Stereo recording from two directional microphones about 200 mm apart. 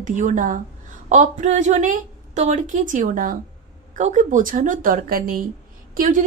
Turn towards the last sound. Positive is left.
turn(degrees=-40)  # may be behind; listen again after turning